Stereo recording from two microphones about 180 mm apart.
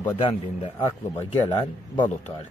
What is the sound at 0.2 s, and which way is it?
A man's voice, 30° left (ahead or behind).